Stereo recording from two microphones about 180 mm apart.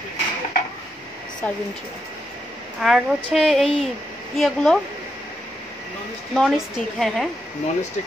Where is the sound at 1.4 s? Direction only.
10° left (ahead or behind).